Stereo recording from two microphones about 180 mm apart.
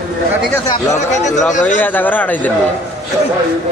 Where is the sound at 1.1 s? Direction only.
40° left (ahead or behind).